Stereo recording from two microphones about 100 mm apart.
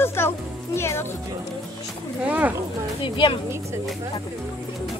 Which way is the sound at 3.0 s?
60° left (ahead or behind).